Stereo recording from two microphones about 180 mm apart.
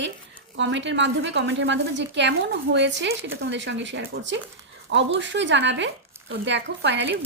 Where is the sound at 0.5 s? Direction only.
90° right.